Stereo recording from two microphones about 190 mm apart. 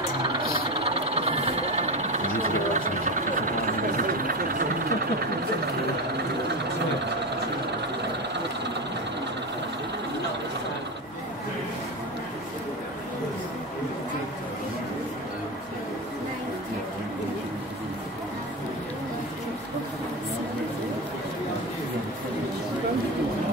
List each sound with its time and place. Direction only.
0.4 s a sound: 50° left (ahead or behind)
0.7 s engine: 30° right (ahead or behind); by 4.9 s 50° right (ahead or behind)
8.0 s vehicle: 65° right (ahead or behind)